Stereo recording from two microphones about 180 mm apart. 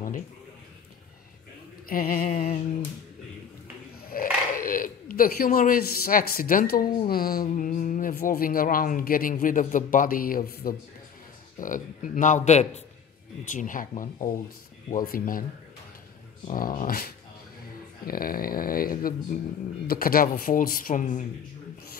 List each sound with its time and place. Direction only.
1.9 s speech: 50° left (ahead or behind)
4.0 s speech: 55° left (ahead or behind)
16.4 s speech: 50° left (ahead or behind)